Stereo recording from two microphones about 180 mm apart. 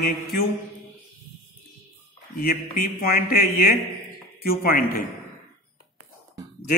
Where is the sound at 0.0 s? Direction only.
60° left (ahead or behind).